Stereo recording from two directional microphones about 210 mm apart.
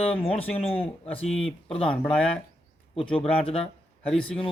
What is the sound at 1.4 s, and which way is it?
Speech, 30° left (ahead or behind).